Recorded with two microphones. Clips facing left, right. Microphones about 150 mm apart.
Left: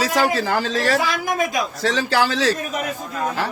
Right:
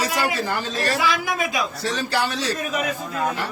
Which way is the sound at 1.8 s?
90° left.